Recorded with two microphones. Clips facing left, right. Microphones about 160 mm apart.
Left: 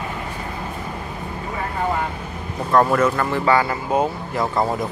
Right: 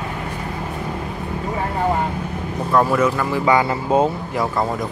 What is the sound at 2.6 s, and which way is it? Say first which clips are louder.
Speech: even; 5° right (ahead or behind).